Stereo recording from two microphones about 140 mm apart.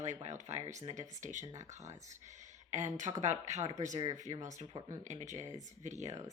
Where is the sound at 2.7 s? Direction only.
60° right (ahead or behind).